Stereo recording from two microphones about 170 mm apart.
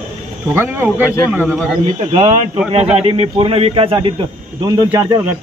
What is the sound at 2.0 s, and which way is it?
A man's voice, 35° right (ahead or behind).